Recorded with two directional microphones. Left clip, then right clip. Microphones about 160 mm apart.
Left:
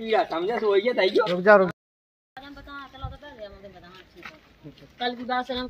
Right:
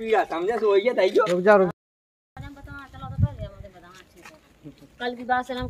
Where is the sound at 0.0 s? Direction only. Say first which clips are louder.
Right 1 dB; 5° left (ahead or behind).